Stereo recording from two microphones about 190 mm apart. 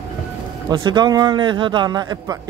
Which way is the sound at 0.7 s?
25° right (ahead or behind).